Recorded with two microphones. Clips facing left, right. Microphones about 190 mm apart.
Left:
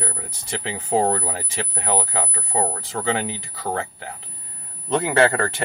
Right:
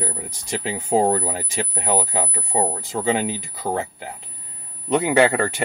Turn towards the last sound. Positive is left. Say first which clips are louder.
# right 2 dB
turn(degrees=-15)  # may be behind; listen again after turning